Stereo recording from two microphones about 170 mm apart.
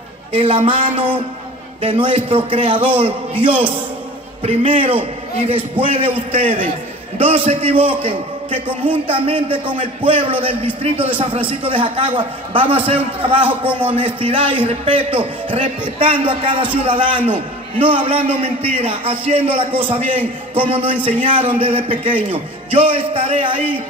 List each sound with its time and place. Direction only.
0.3 s a man's voice: 30° right (ahead or behind)
3.4 s a man's voice: 10° right (ahead or behind)
4.4 s a man's voice: 35° right (ahead or behind)